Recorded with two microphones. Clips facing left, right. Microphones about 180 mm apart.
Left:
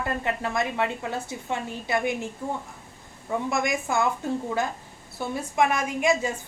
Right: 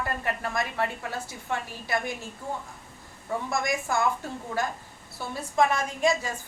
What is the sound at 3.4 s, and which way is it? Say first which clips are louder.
Speech: left 2 dB; 20° left (ahead or behind).